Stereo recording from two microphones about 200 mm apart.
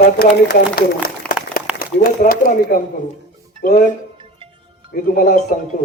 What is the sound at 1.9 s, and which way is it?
A man's voice, 40° left (ahead or behind).